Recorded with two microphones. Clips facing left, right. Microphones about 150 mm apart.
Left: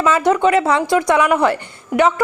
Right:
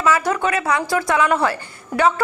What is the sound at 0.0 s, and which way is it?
Speech, 20° left (ahead or behind).